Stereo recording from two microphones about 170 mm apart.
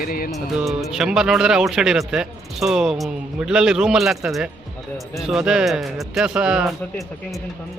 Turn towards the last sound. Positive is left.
turn(degrees=-5)  # may be behind; listen again after turning